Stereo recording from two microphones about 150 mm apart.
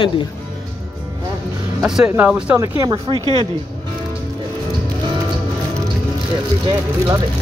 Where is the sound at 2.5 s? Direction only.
25° right (ahead or behind).